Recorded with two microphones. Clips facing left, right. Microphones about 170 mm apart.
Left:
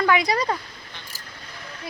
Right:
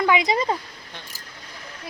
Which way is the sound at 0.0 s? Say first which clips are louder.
Even; 20° right (ahead or behind).